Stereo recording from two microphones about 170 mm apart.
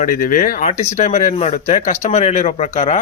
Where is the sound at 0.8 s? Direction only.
40° left (ahead or behind).